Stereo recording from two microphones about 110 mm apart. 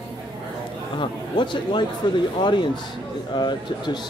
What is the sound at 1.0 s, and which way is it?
Speech, 45° left (ahead or behind).